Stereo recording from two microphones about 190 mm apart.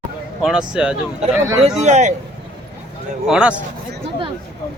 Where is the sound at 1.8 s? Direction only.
40° right (ahead or behind).